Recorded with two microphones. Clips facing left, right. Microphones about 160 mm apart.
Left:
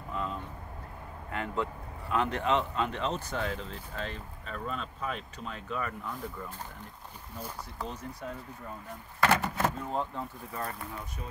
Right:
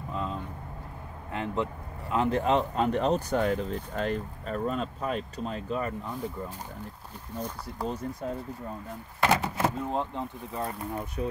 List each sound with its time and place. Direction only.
1.3 s speech: 25° right (ahead or behind)
7.8 s speech: 35° right (ahead or behind)
9.2 s speech: 10° right (ahead or behind)
11.2 s speech: 65° right (ahead or behind)